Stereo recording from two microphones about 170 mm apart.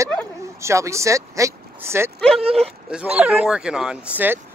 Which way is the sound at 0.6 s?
15° right (ahead or behind).